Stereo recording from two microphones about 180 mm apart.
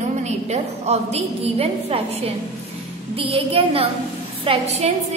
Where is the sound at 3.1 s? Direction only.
30° right (ahead or behind).